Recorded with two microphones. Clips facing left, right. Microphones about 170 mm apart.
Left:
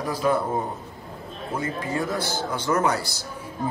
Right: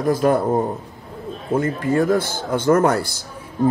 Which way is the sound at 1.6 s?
50° right (ahead or behind).